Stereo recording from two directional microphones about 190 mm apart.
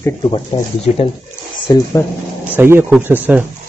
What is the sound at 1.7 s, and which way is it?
Speech, 20° left (ahead or behind).